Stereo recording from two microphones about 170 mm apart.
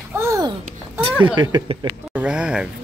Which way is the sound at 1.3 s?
25° right (ahead or behind).